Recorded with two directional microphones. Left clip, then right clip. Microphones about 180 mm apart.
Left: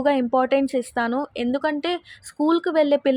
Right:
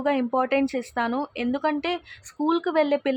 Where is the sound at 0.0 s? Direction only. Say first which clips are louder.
Left 4 dB; 20° left (ahead or behind).